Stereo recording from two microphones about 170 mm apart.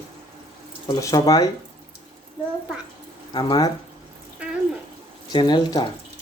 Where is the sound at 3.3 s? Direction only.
25° left (ahead or behind).